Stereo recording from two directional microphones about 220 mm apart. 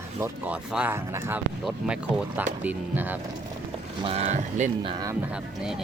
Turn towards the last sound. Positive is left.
turn(degrees=-15)  # may be behind; listen again after turning